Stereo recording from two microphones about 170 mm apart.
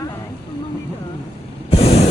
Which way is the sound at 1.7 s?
35° left (ahead or behind).